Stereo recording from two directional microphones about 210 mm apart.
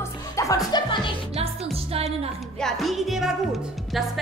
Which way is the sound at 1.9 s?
30° right (ahead or behind).